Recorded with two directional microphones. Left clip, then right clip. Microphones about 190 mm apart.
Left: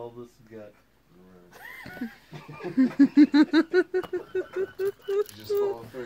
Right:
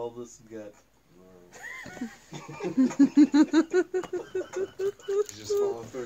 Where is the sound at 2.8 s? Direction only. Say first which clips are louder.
Left 2 dB; 10° left (ahead or behind).